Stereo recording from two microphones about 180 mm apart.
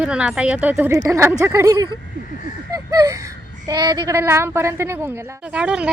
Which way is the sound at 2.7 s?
20° right (ahead or behind).